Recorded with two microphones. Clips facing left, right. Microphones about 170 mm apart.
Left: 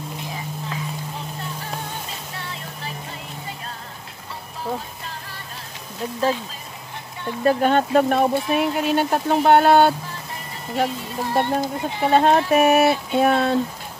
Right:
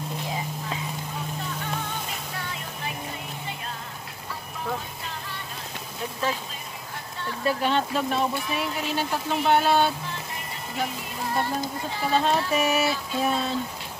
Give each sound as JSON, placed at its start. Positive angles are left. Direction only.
{"t": 7.4, "sound": "speech", "side_deg": 50}
{"t": 11.3, "sound": "speech", "side_deg": 25}
{"t": 12.0, "sound": "speech", "side_deg": 60}